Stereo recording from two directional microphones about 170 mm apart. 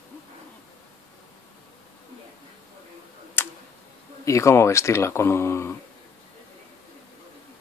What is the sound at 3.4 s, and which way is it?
Tick, 15° left (ahead or behind).